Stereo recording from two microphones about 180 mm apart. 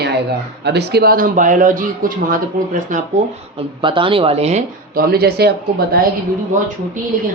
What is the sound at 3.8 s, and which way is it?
Speech, 30° right (ahead or behind).